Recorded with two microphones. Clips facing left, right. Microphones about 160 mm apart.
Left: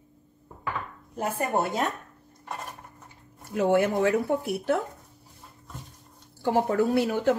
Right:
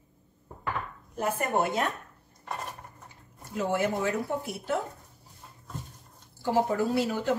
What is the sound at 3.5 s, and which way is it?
Speech, 60° left (ahead or behind).